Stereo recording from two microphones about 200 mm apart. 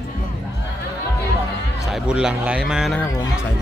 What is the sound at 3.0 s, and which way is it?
Speech, 15° left (ahead or behind).